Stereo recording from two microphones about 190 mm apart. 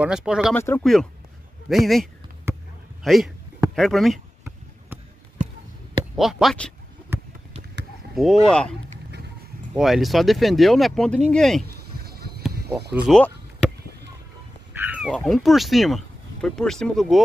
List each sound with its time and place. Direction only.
0.0 s speech: 5° right (ahead or behind)
0.6 s speech: 10° left (ahead or behind)
2.5 s basketball bounce: 15° right (ahead or behind)
3.0 s a man's voice: centre (ahead or behind)
3.7 s a sound: centre (ahead or behind)
6.1 s speech: centre (ahead or behind)
8.1 s speech: centre (ahead or behind)
9.8 s speech: centre (ahead or behind)
11.6 s a sound: 55° right (ahead or behind)
12.9 s speech: centre (ahead or behind)
14.7 s speech: 10° right (ahead or behind)